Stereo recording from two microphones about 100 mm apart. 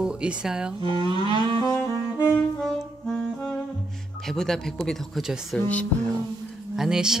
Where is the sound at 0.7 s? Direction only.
55° right (ahead or behind).